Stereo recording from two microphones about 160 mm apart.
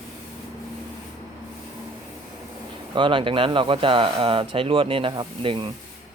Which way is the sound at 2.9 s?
30° right (ahead or behind).